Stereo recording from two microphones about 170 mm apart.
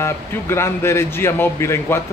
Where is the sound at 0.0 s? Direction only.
15° left (ahead or behind).